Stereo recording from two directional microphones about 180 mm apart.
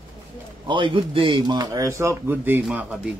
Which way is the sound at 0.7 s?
30° right (ahead or behind).